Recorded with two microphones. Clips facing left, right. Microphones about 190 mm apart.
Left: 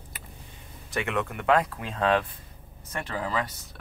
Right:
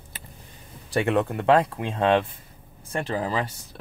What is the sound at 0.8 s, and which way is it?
Speech, 35° right (ahead or behind).